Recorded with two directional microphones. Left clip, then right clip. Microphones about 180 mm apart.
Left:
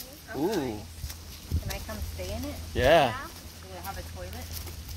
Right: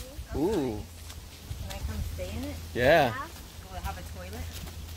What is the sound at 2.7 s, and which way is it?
Speech, 25° right (ahead or behind).